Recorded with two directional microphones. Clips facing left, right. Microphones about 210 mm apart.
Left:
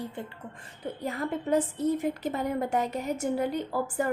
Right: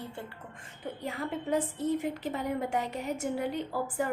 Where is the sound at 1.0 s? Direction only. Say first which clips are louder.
Left 4 dB; 40° left (ahead or behind).